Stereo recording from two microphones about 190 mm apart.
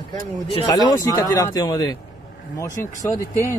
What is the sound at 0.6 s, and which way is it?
Speech, 15° left (ahead or behind).